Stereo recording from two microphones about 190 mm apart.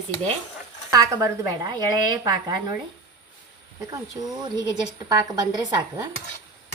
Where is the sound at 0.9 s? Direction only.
15° right (ahead or behind).